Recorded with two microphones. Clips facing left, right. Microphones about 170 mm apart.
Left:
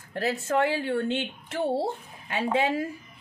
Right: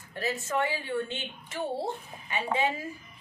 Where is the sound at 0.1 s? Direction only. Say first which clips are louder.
Left 5 dB; 70° left (ahead or behind).